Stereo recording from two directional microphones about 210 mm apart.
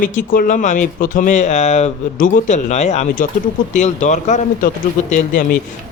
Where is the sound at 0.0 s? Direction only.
40° left (ahead or behind).